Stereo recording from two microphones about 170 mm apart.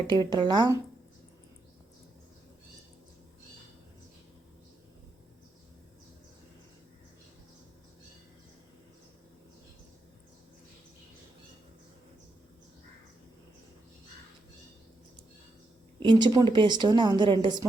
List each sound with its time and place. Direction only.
0.1 s a woman's voice: 25° right (ahead or behind)
16.0 s a woman's voice: 25° right (ahead or behind)